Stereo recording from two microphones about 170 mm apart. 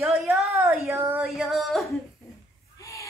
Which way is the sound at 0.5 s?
15° right (ahead or behind).